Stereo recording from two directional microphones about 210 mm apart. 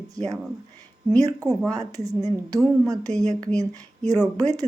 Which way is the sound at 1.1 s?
15° right (ahead or behind).